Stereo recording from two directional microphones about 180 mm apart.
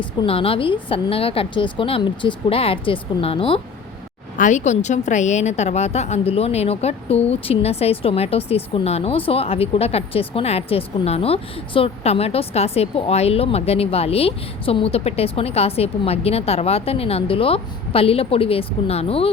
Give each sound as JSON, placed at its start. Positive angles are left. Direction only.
{"t": 0.0, "sound": "a woman's voice", "side_deg": 30}
{"t": 4.4, "sound": "a woman's voice", "side_deg": 40}